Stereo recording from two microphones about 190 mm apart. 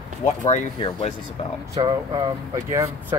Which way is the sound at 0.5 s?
35° left (ahead or behind).